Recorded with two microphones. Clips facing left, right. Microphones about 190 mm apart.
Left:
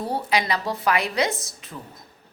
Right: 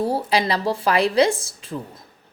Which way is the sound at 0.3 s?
30° right (ahead or behind).